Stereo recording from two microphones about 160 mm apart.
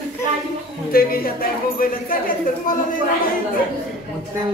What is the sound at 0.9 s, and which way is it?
Speech, 65° left (ahead or behind).